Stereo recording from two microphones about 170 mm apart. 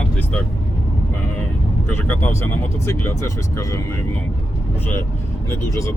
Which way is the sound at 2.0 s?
10° left (ahead or behind).